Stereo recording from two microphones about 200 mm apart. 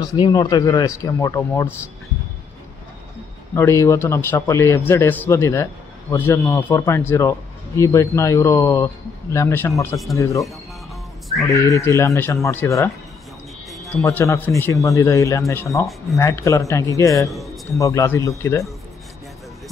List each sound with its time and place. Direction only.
0.1 s speech: 20° left (ahead or behind)
3.5 s speech: 15° left (ahead or behind)
11.4 s speech: 15° left (ahead or behind)
14.0 s speech: 15° left (ahead or behind)